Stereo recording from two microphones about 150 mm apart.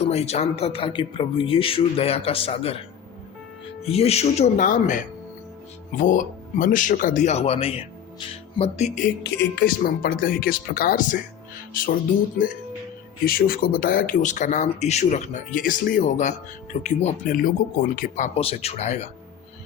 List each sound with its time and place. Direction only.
0.0 s speech: 45° left (ahead or behind)
3.8 s speech: 45° left (ahead or behind); by 11.9 s 70° left (ahead or behind)
13.2 s speech: 80° left; by 17.3 s 50° left (ahead or behind)
17.3 s speech: 70° left (ahead or behind)
18.3 s speech: 40° left (ahead or behind)